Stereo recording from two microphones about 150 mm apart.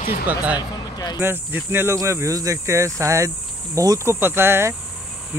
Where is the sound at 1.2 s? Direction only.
15° right (ahead or behind).